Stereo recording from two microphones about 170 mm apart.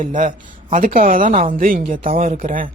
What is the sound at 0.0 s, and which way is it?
Speech, 50° right (ahead or behind).